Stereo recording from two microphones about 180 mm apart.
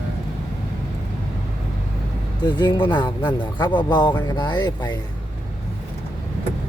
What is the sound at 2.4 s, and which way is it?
Speech, 25° left (ahead or behind).